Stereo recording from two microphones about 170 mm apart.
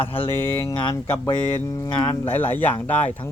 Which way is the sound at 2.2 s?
10° left (ahead or behind).